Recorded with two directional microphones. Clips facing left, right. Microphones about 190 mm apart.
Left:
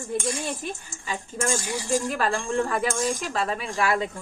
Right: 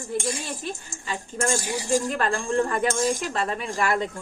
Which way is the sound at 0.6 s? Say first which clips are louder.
Right 1 dB; 15° left (ahead or behind).